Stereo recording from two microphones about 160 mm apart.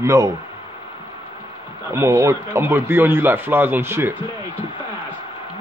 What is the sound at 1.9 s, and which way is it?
Speech, 15° right (ahead or behind).